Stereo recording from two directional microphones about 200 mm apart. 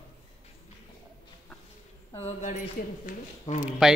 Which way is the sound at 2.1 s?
35° left (ahead or behind).